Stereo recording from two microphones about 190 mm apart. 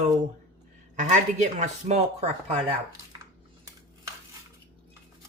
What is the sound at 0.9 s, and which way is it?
Speech, 40° right (ahead or behind).